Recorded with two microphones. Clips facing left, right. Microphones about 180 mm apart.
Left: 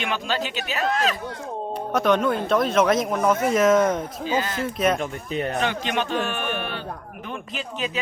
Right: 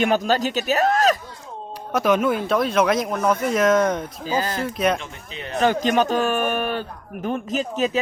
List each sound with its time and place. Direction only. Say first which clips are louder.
0.0 s speech: right 7 dB; 40° right (ahead or behind)
1.9 s speech: right 1 dB; 5° right (ahead or behind)
4.3 s speech: right 2 dB; 40° right (ahead or behind)
4.6 s speech: even; centre (ahead or behind)
4.9 s speech: left 9 dB; 50° left (ahead or behind)
5.5 s speech: right 11 dB; 40° right (ahead or behind)